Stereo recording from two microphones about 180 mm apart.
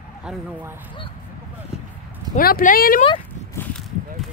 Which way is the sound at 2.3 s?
50° left (ahead or behind).